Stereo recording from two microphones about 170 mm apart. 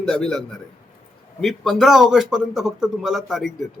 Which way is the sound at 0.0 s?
Centre (ahead or behind).